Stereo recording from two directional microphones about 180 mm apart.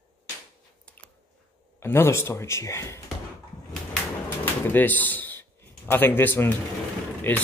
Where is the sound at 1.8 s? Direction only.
15° left (ahead or behind).